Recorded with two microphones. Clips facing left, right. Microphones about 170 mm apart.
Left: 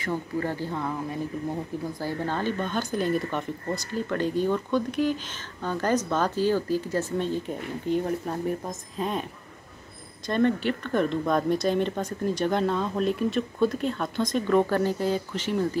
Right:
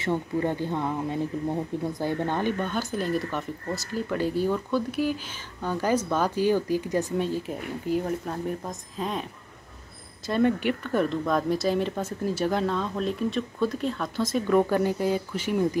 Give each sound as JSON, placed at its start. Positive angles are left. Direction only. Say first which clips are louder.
{"t": 0.0, "sound": "speech", "louder": "right 3 dB", "side_deg": -25}
{"t": 2.7, "sound": "speech", "louder": "left 1 dB", "side_deg": 0}
{"t": 10.2, "sound": "speech", "louder": "even", "side_deg": -10}